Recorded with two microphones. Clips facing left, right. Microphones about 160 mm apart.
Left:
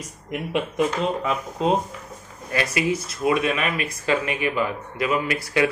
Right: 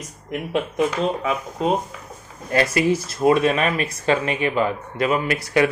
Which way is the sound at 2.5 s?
35° right (ahead or behind).